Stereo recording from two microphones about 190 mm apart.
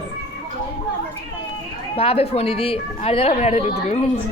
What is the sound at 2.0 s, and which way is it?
A woman's voice, 30° left (ahead or behind).